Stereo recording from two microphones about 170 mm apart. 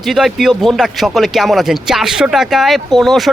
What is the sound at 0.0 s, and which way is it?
Speech, centre (ahead or behind).